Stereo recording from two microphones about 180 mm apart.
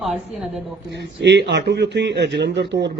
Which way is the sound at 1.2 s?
70° right (ahead or behind).